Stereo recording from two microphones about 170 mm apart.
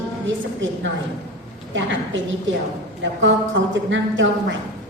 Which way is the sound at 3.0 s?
90° right.